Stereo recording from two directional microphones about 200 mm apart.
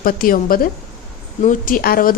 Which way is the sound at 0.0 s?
45° left (ahead or behind).